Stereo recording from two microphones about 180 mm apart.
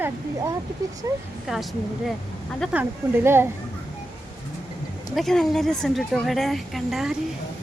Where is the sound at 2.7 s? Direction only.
10° right (ahead or behind).